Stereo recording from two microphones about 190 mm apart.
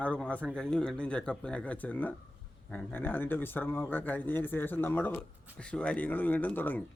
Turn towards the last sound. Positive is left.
turn(degrees=10)  # may be behind; listen again after turning